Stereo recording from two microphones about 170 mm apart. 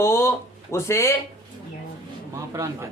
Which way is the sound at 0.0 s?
15° left (ahead or behind).